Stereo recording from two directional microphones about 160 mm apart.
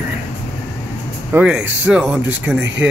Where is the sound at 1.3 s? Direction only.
10° right (ahead or behind).